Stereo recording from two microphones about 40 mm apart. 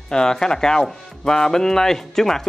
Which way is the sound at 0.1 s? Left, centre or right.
Centre.